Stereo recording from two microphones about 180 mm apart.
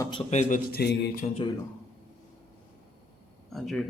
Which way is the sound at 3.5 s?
Centre (ahead or behind).